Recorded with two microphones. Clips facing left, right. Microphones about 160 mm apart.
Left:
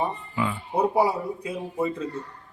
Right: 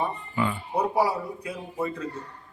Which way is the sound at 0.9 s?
20° left (ahead or behind).